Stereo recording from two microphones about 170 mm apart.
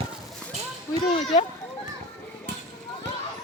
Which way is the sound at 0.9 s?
20° left (ahead or behind).